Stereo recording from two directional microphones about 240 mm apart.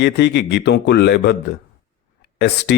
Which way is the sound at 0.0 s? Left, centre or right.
Left.